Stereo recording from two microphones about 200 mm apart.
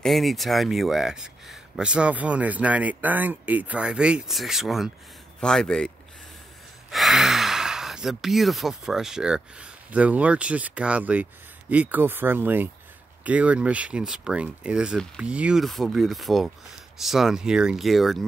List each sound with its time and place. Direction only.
0.0 s speech: centre (ahead or behind)
6.9 s speech: centre (ahead or behind)